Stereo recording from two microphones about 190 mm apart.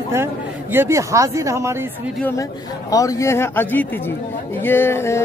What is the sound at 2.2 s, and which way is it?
A woman's voice, 15° left (ahead or behind).